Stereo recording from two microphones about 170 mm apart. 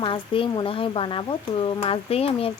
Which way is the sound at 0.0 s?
30° left (ahead or behind).